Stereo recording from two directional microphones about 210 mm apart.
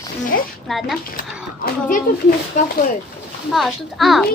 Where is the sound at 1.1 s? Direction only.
45° left (ahead or behind).